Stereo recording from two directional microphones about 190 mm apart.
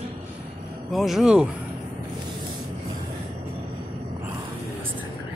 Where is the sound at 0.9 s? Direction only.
Centre (ahead or behind).